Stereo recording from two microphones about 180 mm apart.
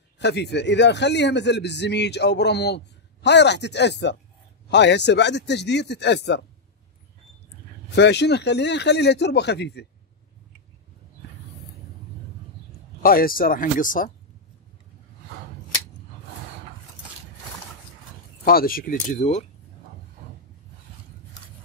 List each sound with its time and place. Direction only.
0.2 s a man's voice: 70° left (ahead or behind)
7.9 s a man's voice: 70° left (ahead or behind)
13.0 s speech: 55° left (ahead or behind)
18.4 s speech: 55° left (ahead or behind)